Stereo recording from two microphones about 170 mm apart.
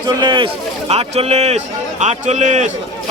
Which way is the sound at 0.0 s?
25° right (ahead or behind).